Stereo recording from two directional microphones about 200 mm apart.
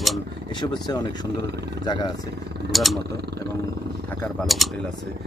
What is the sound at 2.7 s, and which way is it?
Speech, centre (ahead or behind).